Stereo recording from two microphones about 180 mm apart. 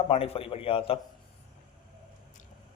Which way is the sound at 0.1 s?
30° left (ahead or behind).